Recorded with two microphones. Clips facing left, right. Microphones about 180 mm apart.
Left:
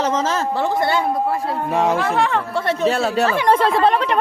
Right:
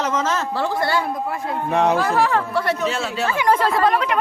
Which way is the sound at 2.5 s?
25° left (ahead or behind).